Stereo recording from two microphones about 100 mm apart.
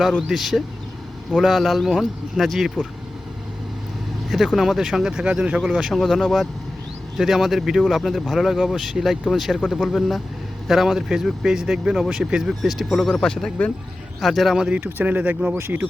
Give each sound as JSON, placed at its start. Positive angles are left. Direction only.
{"t": 0.2, "sound": "speech", "side_deg": 0}
{"t": 4.3, "sound": "speech", "side_deg": 0}
{"t": 14.8, "sound": "speech", "side_deg": -20}